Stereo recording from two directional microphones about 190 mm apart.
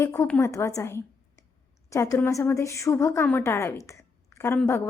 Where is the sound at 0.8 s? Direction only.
15° left (ahead or behind).